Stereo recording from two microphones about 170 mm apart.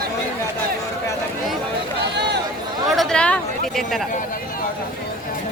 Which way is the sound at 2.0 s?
85° right.